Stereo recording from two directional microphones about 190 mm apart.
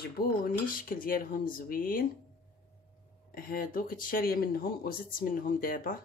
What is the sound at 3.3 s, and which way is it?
Speech, 50° left (ahead or behind).